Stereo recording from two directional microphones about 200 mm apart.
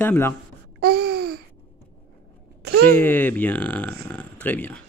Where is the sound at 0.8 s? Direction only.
55° right (ahead or behind).